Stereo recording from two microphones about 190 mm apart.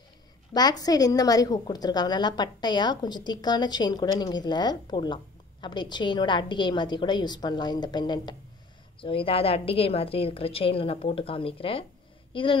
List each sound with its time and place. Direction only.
0.5 s a woman's voice: 20° left (ahead or behind)